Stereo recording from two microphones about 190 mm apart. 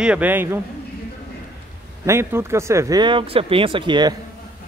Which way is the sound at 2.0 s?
15° right (ahead or behind).